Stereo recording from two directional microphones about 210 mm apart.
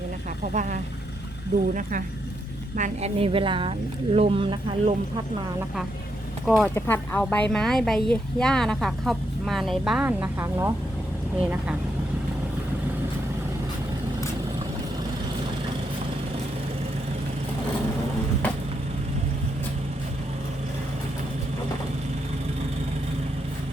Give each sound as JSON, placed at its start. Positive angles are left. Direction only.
{"t": 0.5, "sound": "a woman's voice", "side_deg": -35}
{"t": 6.4, "sound": "speech", "side_deg": 0}
{"t": 6.7, "sound": "speech", "side_deg": 10}